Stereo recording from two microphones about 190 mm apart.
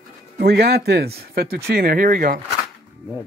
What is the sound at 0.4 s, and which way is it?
Speech, 55° right (ahead or behind).